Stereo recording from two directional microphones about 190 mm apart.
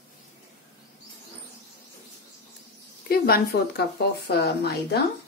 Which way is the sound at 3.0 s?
55° left (ahead or behind).